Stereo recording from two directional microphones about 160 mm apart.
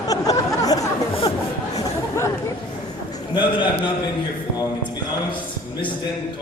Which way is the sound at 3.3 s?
30° left (ahead or behind).